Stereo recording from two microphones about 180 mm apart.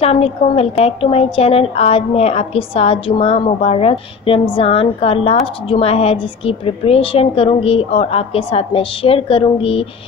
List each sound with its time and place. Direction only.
0.0 s a woman's voice: 35° left (ahead or behind)